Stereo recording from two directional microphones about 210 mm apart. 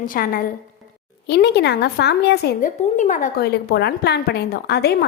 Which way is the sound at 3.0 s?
35° left (ahead or behind).